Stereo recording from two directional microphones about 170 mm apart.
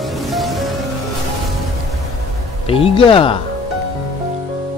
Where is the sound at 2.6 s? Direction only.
35° left (ahead or behind).